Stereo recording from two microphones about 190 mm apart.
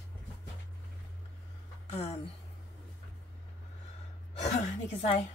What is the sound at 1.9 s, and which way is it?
Speech, 35° left (ahead or behind).